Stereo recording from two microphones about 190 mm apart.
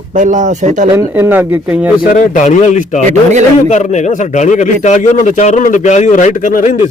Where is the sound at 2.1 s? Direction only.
40° left (ahead or behind).